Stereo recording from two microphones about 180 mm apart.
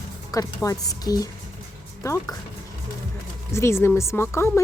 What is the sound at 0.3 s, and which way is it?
A woman's voice, 20° left (ahead or behind).